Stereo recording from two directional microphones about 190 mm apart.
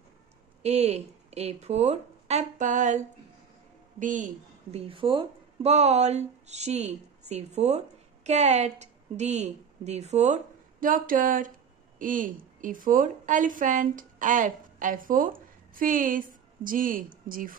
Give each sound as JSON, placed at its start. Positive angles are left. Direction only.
{"t": 0.6, "sound": "a woman's voice", "side_deg": -35}